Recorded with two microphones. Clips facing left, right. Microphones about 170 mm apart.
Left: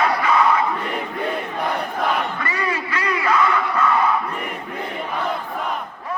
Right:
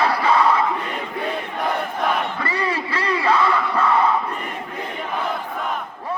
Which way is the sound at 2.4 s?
30° right (ahead or behind).